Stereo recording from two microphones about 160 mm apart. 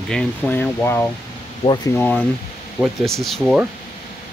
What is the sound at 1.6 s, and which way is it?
Speech, 40° left (ahead or behind).